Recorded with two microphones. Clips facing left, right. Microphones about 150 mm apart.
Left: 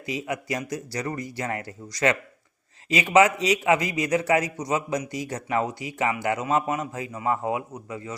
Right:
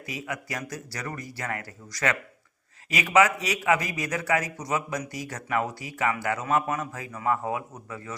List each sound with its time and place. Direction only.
0.0 s a man's voice: 20° left (ahead or behind)